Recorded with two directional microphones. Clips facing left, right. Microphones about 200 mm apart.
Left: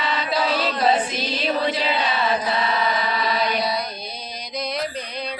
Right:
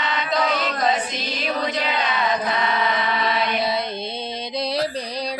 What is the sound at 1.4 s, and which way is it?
Music, 30° left (ahead or behind).